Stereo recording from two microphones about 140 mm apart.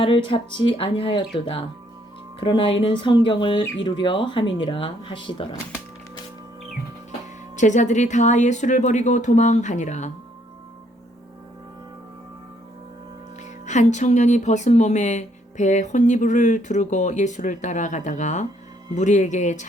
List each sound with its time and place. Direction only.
0.0 s speech: 40° left (ahead or behind)
7.5 s speech: 60° left (ahead or behind)
13.4 s speech: 55° left (ahead or behind)